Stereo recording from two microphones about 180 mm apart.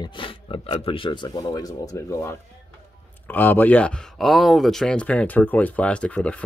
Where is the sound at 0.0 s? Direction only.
30° left (ahead or behind).